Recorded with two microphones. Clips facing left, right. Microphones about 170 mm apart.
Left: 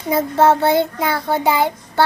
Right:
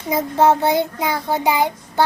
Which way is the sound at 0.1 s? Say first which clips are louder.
Left 1 dB; 15° right (ahead or behind).